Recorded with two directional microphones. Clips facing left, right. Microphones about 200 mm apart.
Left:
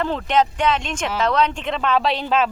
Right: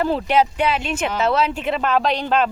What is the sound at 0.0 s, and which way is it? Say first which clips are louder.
A woman's voice: right 2 dB; 10° right (ahead or behind).